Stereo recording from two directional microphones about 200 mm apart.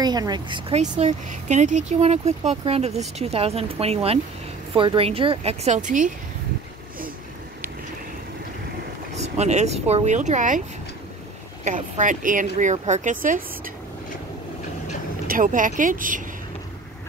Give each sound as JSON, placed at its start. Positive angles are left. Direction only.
{"t": 0.0, "sound": "speech", "side_deg": -20}
{"t": 1.0, "sound": "speech", "side_deg": -35}
{"t": 9.1, "sound": "speech", "side_deg": -35}
{"t": 11.6, "sound": "speech", "side_deg": -40}
{"t": 15.2, "sound": "speech", "side_deg": -40}